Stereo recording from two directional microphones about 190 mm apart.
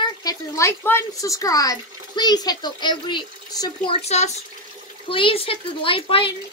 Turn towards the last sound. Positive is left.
turn(degrees=30)  # may be behind; listen again after turning